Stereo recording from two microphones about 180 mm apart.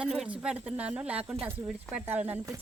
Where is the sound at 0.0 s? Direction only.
5° right (ahead or behind).